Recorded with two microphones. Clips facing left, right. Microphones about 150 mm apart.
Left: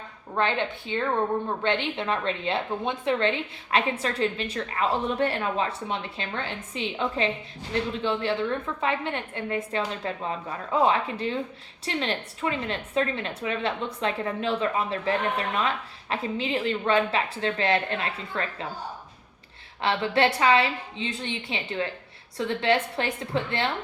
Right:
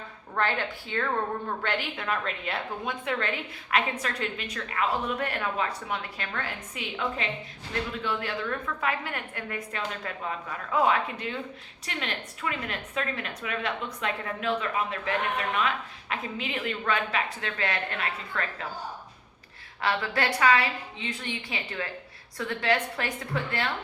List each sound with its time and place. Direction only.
0.3 s a woman's voice: 20° left (ahead or behind)
19.8 s a woman's voice: 25° left (ahead or behind)